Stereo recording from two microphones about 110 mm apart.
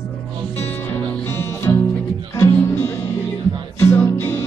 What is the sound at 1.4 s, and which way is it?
Music, 25° left (ahead or behind).